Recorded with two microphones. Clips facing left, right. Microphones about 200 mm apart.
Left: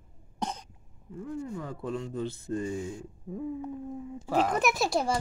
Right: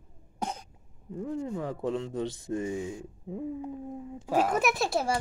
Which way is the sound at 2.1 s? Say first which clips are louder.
Right 1 dB; 85° right.